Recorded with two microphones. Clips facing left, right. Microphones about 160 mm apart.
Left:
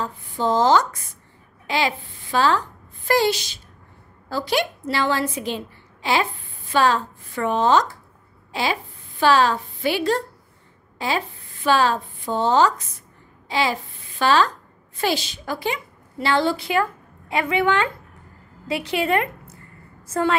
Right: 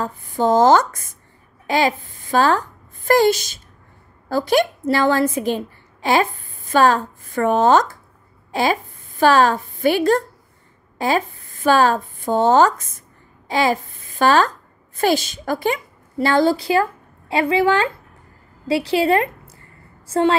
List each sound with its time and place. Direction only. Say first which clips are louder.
0.0 s a woman's voice: right 4 dB; 45° right (ahead or behind); by 20.3 s 30° right (ahead or behind)